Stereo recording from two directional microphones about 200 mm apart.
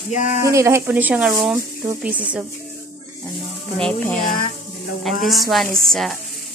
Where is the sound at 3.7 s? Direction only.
5° left (ahead or behind).